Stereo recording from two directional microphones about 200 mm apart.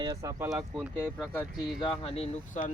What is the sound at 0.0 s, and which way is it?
Speech, 15° right (ahead or behind).